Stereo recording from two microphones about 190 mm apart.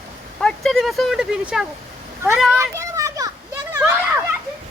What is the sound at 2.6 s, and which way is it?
Children playing, 15° right (ahead or behind).